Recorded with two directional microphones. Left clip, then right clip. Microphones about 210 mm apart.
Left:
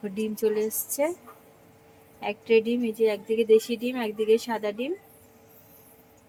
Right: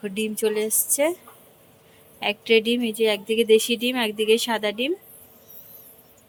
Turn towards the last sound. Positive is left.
turn(degrees=-10)  # may be behind; listen again after turning